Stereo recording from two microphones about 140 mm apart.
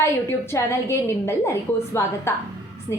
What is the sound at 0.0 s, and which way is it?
A woman's voice, 20° left (ahead or behind).